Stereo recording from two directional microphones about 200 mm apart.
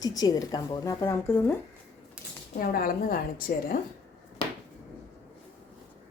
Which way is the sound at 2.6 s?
45° left (ahead or behind).